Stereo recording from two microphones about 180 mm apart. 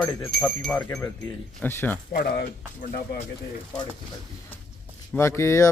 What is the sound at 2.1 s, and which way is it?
Speech, 60° left (ahead or behind).